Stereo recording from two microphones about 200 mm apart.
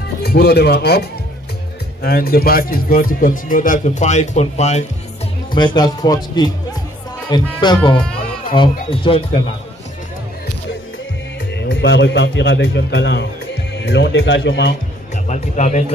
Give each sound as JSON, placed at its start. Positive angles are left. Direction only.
{"t": 0.2, "sound": "speech", "side_deg": 50}
{"t": 5.5, "sound": "speech", "side_deg": 25}
{"t": 11.5, "sound": "a man's voice", "side_deg": 60}
{"t": 15.2, "sound": "speech", "side_deg": 35}